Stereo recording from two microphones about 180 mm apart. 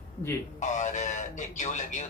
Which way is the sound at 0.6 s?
40° left (ahead or behind).